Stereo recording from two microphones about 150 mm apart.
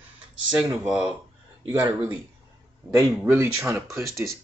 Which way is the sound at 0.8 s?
5° right (ahead or behind).